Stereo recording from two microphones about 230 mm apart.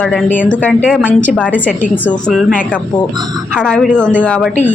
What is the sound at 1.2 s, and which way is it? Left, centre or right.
A woman's voice, centre.